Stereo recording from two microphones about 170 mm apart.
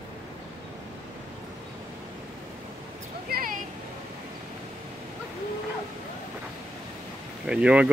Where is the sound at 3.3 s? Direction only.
65° right (ahead or behind).